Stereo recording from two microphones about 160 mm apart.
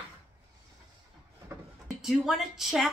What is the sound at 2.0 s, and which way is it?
Speech, centre (ahead or behind).